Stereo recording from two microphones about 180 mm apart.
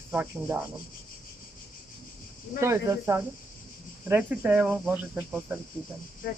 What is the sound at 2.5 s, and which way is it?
Speech, 15° right (ahead or behind).